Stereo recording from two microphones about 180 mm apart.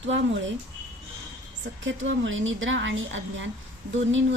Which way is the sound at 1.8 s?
90° right.